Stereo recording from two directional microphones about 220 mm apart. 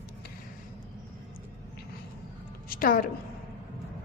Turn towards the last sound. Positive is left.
turn(degrees=40)  # may be behind; listen again after turning